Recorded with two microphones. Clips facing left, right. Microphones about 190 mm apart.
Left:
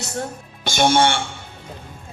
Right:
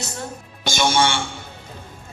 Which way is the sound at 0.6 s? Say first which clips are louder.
Left 3 dB; 55° left (ahead or behind).